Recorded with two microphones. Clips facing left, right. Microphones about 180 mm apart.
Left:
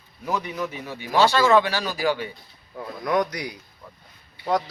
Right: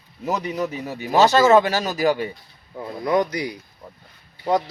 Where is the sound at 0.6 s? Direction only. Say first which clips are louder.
Right 4 dB; 40° right (ahead or behind).